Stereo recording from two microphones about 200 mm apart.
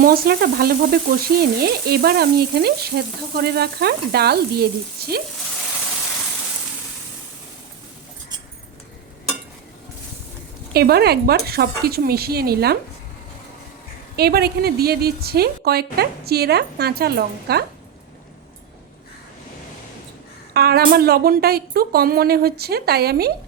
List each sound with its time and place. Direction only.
0.0 s frying: 50° right (ahead or behind)
10.8 s frying: 50° right (ahead or behind)
14.2 s frying: 50° right (ahead or behind)
20.5 s frying: 50° right (ahead or behind)